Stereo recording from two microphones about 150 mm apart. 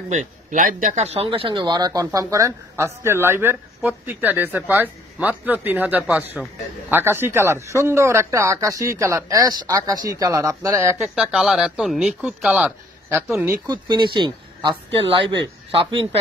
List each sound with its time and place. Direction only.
0.5 s speech: 60° right (ahead or behind); by 11.0 s 20° right (ahead or behind)
11.0 s speech: 5° right (ahead or behind)
13.7 s speech: 30° right (ahead or behind)